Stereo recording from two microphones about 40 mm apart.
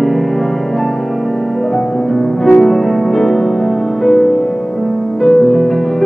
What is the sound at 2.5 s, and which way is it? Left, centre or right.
Music, centre.